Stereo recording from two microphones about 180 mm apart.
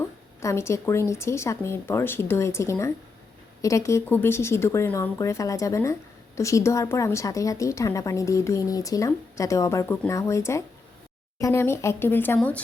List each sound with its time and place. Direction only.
0.0 s speech: 15° left (ahead or behind)